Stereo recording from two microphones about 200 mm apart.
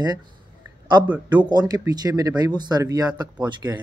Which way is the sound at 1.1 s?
5° right (ahead or behind).